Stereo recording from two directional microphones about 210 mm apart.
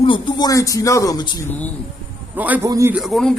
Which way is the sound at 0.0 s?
20° left (ahead or behind).